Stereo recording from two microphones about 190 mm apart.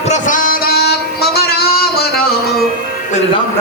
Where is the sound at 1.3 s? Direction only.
55° left (ahead or behind).